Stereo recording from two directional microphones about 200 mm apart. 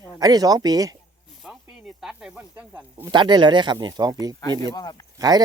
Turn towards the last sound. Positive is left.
turn(degrees=-20)  # may be behind; listen again after turning